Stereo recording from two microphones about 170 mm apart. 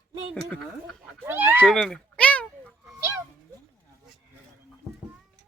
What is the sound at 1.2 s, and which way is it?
Speech, 10° right (ahead or behind).